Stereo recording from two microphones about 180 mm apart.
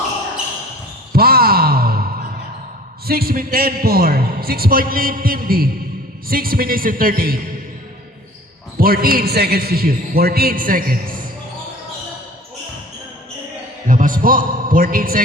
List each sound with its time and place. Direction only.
1.1 s a sound: 55° right (ahead or behind)
3.1 s a man's voice: 55° right (ahead or behind)
8.8 s a man's voice: 55° right (ahead or behind)
13.8 s a man's voice: 50° right (ahead or behind)